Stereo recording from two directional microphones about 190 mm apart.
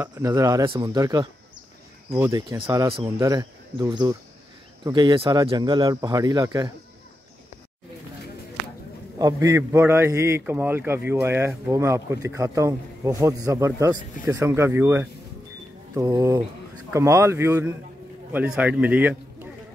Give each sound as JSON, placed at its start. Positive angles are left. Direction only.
{"t": 0.0, "sound": "a man's voice", "side_deg": -15}
{"t": 9.2, "sound": "a man's voice", "side_deg": -15}